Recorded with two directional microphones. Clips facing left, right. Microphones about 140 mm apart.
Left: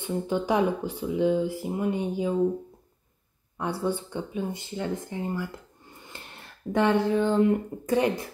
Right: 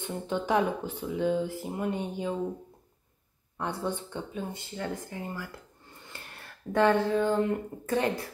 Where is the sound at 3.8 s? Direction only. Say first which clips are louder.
Left 4 dB; 10° left (ahead or behind).